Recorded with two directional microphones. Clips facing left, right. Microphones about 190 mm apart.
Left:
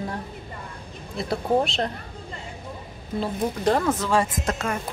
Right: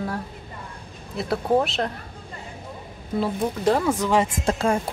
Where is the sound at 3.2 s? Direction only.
5° right (ahead or behind); by 4.7 s 30° right (ahead or behind).